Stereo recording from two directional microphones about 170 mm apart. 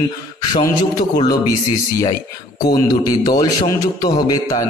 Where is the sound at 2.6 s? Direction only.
20° left (ahead or behind).